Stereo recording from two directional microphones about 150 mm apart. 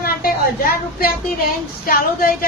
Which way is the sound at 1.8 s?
70° left (ahead or behind).